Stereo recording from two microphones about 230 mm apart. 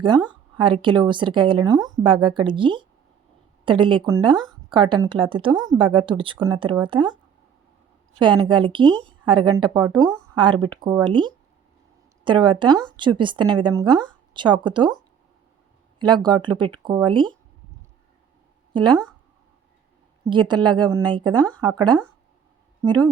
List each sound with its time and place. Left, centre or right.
0.5 s speech: right
8.2 s speech: right
16.0 s speech: centre
18.7 s speech: centre
20.2 s speech: right